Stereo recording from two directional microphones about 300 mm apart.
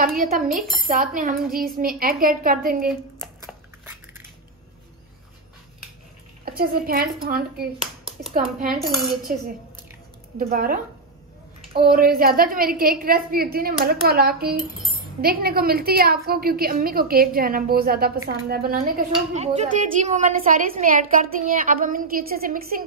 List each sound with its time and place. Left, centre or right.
0.0 s a woman's voice: right
0.5 s speech: centre
1.5 s a woman's voice: right
3.8 s biting: centre
6.4 s a woman's voice: right
8.8 s speech: centre
10.5 s a woman's voice: right